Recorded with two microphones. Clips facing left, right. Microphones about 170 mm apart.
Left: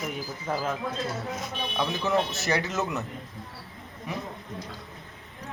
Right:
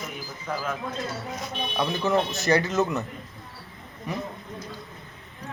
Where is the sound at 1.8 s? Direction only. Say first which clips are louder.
Right 2 dB; centre (ahead or behind).